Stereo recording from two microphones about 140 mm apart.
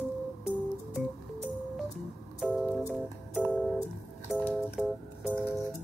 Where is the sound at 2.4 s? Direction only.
Centre (ahead or behind).